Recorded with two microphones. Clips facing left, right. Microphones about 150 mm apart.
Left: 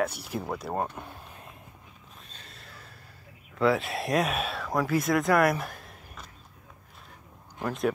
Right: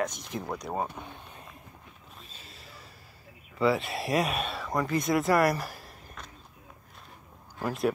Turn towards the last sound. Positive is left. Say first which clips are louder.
# even
turn(degrees=0)  # may be behind; listen again after turning